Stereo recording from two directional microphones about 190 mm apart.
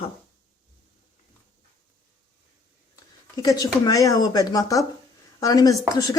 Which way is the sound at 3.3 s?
20° left (ahead or behind).